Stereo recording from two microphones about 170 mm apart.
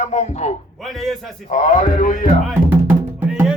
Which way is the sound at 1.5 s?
45° left (ahead or behind).